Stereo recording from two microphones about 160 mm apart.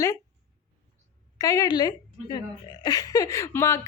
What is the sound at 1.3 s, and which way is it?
A woman's voice, 20° left (ahead or behind).